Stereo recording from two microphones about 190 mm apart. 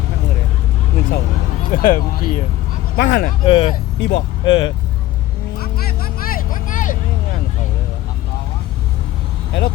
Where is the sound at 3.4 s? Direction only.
25° left (ahead or behind).